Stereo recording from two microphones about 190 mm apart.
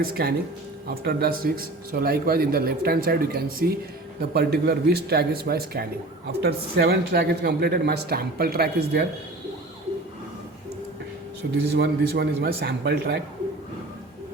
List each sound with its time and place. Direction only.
0.0 s speech: 55° right (ahead or behind)
11.4 s speech: 60° right (ahead or behind)